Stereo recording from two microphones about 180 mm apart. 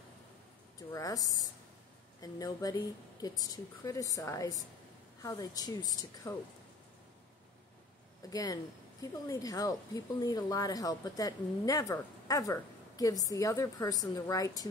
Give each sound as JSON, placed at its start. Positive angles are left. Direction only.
{"t": 0.7, "sound": "speech", "side_deg": 20}
{"t": 8.3, "sound": "speech", "side_deg": 20}